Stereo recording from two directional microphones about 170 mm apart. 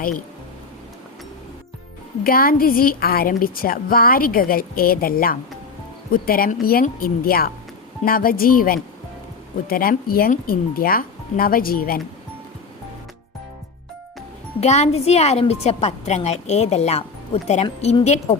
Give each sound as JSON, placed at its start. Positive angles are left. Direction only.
{"t": 2.2, "sound": "a woman's voice", "side_deg": 60}
{"t": 14.6, "sound": "a woman's voice", "side_deg": 40}